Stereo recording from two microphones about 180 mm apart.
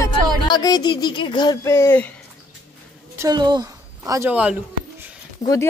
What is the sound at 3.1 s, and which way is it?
A woman's voice, 20° right (ahead or behind).